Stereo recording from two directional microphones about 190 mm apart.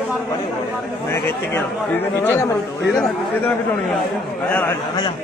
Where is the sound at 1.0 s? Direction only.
10° left (ahead or behind).